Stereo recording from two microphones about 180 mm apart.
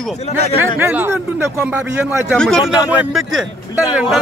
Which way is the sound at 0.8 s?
10° right (ahead or behind).